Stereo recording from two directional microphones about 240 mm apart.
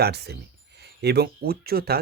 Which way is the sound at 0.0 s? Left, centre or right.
Right.